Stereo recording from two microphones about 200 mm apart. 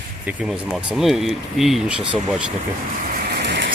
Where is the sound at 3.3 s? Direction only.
60° right (ahead or behind).